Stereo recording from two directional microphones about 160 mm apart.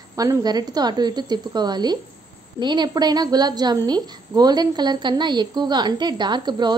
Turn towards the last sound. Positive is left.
turn(degrees=-30)  # may be behind; listen again after turning